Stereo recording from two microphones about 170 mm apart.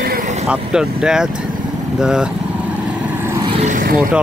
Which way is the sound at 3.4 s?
40° right (ahead or behind).